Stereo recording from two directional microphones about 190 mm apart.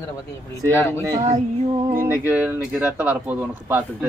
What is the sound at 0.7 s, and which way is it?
Speech, 10° left (ahead or behind).